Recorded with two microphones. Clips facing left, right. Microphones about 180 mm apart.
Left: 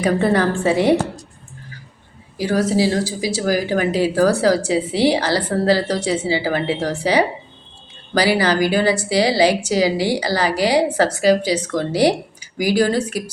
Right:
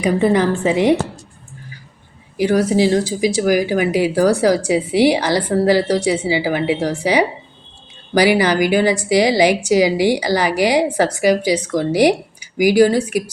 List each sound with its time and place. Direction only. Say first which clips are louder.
0.0 s a woman's voice: right 2 dB; 15° right (ahead or behind)
2.4 s a woman's voice: right 3 dB; 15° right (ahead or behind)